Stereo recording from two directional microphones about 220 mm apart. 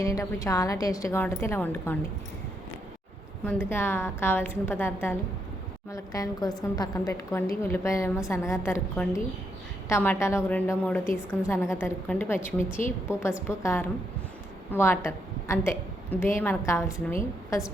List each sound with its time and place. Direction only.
0.0 s a woman's voice: 15° left (ahead or behind)
3.4 s a woman's voice: 10° left (ahead or behind)